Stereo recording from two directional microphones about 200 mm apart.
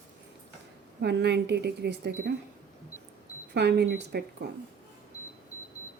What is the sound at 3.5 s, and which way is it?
Speech, 55° right (ahead or behind).